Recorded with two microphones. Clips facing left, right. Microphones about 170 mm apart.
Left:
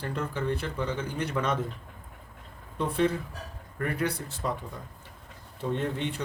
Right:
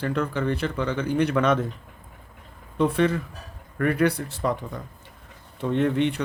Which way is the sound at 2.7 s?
80° right.